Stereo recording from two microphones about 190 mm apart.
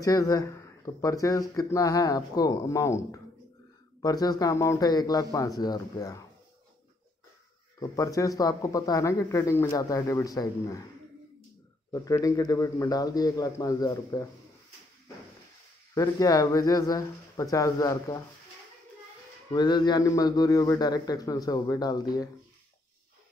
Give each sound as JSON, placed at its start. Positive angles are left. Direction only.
{"t": 0.0, "sound": "a man's voice", "side_deg": 20}
{"t": 7.8, "sound": "speech", "side_deg": 20}
{"t": 11.9, "sound": "a man's voice", "side_deg": 20}
{"t": 15.9, "sound": "a man's voice", "side_deg": 20}
{"t": 19.5, "sound": "a man's voice", "side_deg": 20}